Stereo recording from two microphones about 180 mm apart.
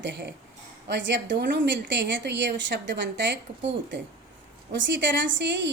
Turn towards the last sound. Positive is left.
turn(degrees=-90)